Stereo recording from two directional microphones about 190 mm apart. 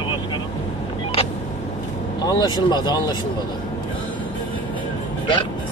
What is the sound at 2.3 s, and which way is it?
Speech, 20° left (ahead or behind).